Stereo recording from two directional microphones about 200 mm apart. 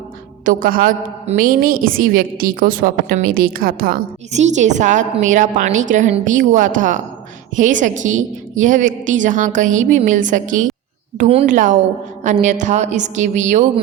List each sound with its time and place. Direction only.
0.4 s a woman's voice: 45° right (ahead or behind)